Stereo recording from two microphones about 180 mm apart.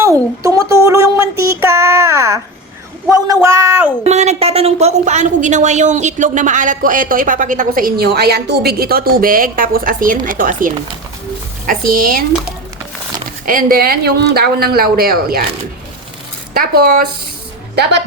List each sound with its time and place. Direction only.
0.0 s a sound: 20° right (ahead or behind)
4.0 s a woman's voice: 40° right (ahead or behind)
13.4 s speech: 50° right (ahead or behind)
16.6 s speech: 55° right (ahead or behind)